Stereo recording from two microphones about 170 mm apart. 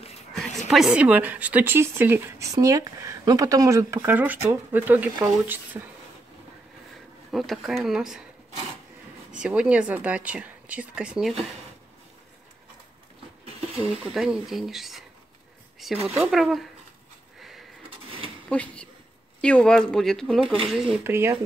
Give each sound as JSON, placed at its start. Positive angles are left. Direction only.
{"t": 0.6, "sound": "speech", "side_deg": 0}
{"t": 7.2, "sound": "speech", "side_deg": 0}
{"t": 9.4, "sound": "speech", "side_deg": -5}
{"t": 13.6, "sound": "speech", "side_deg": -35}
{"t": 14.1, "sound": "speech", "side_deg": 0}
{"t": 17.4, "sound": "a sound", "side_deg": 0}
{"t": 17.8, "sound": "a sound", "side_deg": -30}
{"t": 18.5, "sound": "speech", "side_deg": 5}
{"t": 21.0, "sound": "speech", "side_deg": -15}